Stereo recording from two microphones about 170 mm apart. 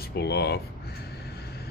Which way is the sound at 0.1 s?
70° left (ahead or behind).